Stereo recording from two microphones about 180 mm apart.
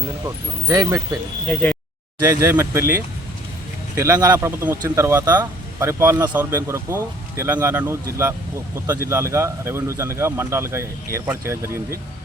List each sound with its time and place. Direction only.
0.7 s speech: 20° right (ahead or behind)
1.5 s speech: 10° left (ahead or behind)
2.3 s speech: 15° right (ahead or behind)